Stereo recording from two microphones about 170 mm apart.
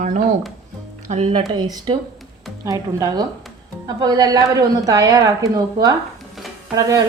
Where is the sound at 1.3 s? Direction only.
30° right (ahead or behind).